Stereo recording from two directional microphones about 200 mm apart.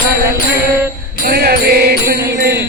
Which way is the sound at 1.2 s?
50° right (ahead or behind).